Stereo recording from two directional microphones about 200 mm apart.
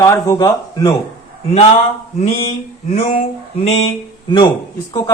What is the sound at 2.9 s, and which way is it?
Mantra, 30° left (ahead or behind).